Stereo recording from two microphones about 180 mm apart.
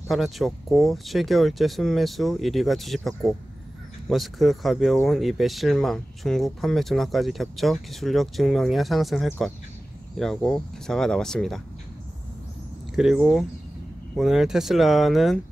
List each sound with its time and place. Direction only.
0.1 s speech: centre (ahead or behind)
12.9 s speech: 5° right (ahead or behind)